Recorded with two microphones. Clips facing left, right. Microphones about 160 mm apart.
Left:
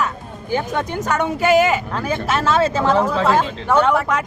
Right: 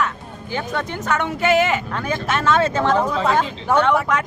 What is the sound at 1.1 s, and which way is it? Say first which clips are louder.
Speech: left 2 dB; 15° left (ahead or behind).